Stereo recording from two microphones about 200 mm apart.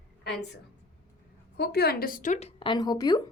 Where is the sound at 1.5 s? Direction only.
55° left (ahead or behind).